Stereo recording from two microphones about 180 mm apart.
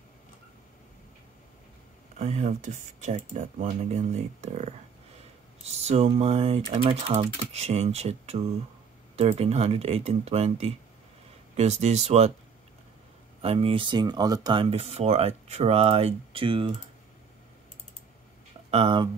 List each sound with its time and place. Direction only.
2.1 s speech: 40° right (ahead or behind)
13.4 s speech: 30° right (ahead or behind)
18.7 s speech: 30° right (ahead or behind)